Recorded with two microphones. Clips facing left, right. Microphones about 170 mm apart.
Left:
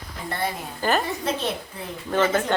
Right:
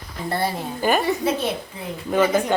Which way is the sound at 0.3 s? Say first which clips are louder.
Right 4 dB; 35° right (ahead or behind).